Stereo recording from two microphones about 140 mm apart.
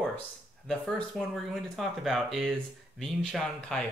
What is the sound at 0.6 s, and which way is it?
Speech, 5° left (ahead or behind).